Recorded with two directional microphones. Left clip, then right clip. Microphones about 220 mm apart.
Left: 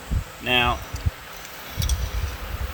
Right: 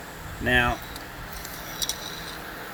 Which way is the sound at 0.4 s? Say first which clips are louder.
Left 1 dB; 10° left (ahead or behind).